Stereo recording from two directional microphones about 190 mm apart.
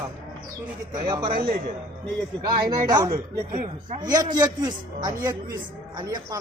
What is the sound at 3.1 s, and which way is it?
Speech, 45° right (ahead or behind).